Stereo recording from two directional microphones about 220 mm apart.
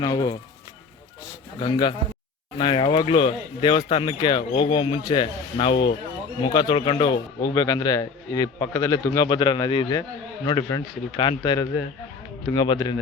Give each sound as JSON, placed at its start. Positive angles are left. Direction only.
{"t": 0.0, "sound": "speech", "side_deg": 15}
{"t": 1.5, "sound": "speech", "side_deg": 20}